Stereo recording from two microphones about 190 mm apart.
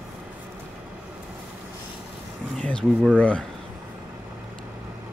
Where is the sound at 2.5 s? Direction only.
Centre (ahead or behind).